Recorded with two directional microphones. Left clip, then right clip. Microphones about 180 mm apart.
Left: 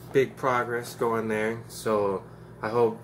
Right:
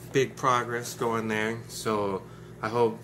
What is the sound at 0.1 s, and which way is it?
Speech, 15° right (ahead or behind).